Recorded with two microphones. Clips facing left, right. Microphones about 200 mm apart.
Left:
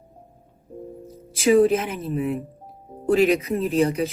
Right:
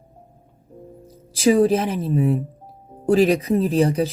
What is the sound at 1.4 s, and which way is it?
Speech, 30° right (ahead or behind).